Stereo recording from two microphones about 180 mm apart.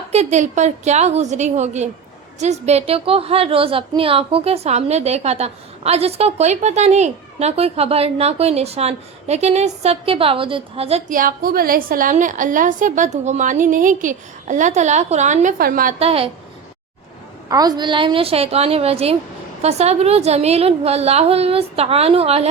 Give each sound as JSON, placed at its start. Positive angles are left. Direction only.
{"t": 0.1, "sound": "a woman's voice", "side_deg": -40}
{"t": 11.1, "sound": "a woman's voice", "side_deg": -50}
{"t": 16.0, "sound": "a woman's voice", "side_deg": -35}
{"t": 17.5, "sound": "a woman's voice", "side_deg": -20}